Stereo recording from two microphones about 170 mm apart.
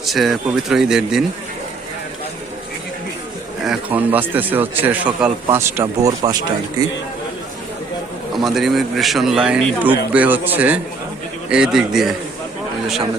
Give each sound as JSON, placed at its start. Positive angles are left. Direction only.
{"t": 0.0, "sound": "a man's voice", "side_deg": 0}
{"t": 3.6, "sound": "a man's voice", "side_deg": -5}
{"t": 8.4, "sound": "a man's voice", "side_deg": 0}